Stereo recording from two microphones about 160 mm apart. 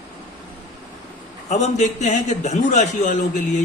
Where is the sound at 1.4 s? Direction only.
45° left (ahead or behind).